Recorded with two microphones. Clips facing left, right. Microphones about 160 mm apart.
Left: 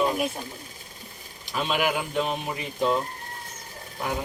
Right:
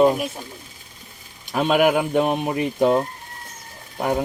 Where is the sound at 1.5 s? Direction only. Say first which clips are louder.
Right 8 dB; 50° right (ahead or behind).